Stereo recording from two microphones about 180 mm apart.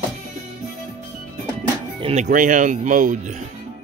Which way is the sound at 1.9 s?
35° right (ahead or behind).